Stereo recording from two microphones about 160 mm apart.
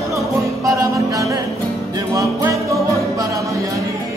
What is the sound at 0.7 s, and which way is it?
Music, 20° right (ahead or behind).